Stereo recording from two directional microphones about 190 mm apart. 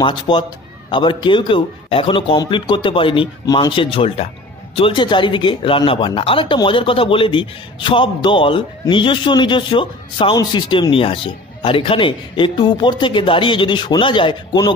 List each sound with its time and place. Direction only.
0.0 s a man's voice: 25° left (ahead or behind)